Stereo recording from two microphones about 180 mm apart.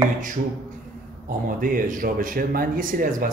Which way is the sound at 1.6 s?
50° right (ahead or behind).